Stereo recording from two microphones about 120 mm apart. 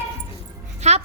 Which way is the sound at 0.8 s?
75° right (ahead or behind).